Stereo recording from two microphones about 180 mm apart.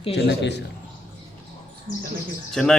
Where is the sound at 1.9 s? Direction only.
45° left (ahead or behind).